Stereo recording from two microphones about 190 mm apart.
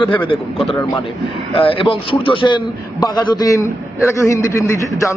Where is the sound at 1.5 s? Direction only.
30° left (ahead or behind).